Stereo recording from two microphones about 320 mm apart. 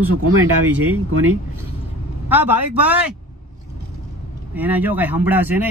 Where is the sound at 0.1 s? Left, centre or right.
Right.